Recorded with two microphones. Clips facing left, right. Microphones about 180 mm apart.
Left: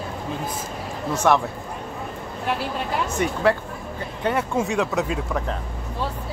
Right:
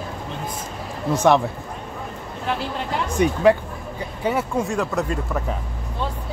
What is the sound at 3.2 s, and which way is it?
Speech, 15° right (ahead or behind).